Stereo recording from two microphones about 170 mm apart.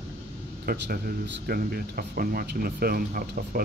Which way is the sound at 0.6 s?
65° right (ahead or behind).